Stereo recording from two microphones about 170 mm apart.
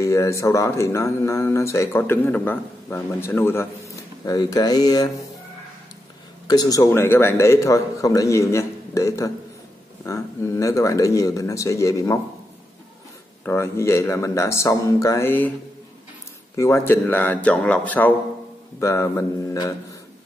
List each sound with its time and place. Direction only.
0.0 s speech: 15° left (ahead or behind)
6.4 s speech: 25° left (ahead or behind)
13.4 s speech: 15° left (ahead or behind)
16.5 s speech: 15° left (ahead or behind)